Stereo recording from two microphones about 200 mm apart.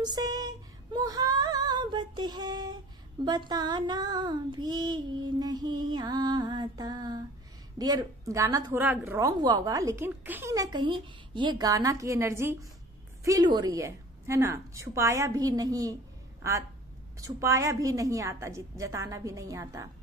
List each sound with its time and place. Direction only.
0.0 s female singing: 20° right (ahead or behind)
3.3 s child singing: 20° right (ahead or behind)
7.8 s a woman's voice: 20° right (ahead or behind)